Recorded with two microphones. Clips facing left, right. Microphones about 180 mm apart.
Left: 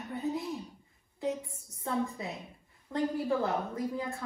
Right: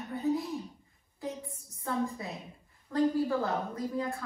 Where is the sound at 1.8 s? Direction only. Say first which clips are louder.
Even; 20° left (ahead or behind).